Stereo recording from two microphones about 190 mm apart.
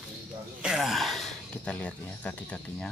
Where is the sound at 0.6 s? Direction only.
Centre (ahead or behind).